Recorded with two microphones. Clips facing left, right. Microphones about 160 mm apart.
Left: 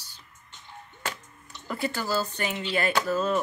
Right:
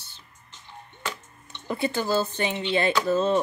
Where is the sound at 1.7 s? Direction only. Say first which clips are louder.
Right 4 dB; 20° right (ahead or behind).